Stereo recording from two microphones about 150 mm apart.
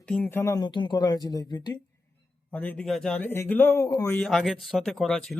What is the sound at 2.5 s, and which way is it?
A man's voice, 10° left (ahead or behind).